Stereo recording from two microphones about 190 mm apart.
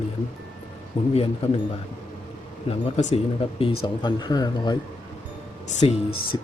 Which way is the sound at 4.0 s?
20° left (ahead or behind).